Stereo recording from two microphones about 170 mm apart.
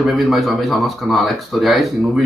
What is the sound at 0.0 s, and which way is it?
Speech, centre (ahead or behind).